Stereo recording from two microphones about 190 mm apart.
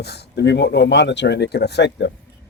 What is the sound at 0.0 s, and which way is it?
Speech, 60° left (ahead or behind).